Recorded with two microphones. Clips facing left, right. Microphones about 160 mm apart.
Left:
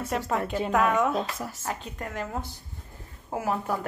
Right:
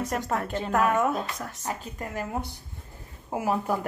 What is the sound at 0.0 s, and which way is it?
A woman's voice, 5° left (ahead or behind).